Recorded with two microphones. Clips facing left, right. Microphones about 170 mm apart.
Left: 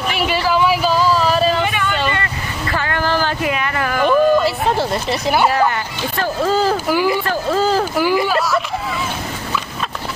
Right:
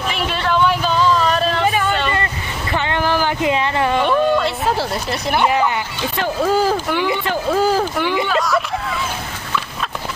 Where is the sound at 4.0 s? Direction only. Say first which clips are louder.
Left 5 dB; centre (ahead or behind).